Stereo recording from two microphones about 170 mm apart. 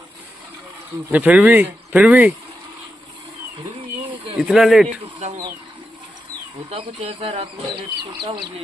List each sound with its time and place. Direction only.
1.1 s speech: 10° right (ahead or behind)
4.4 s speech: centre (ahead or behind)
6.7 s speech: 35° right (ahead or behind)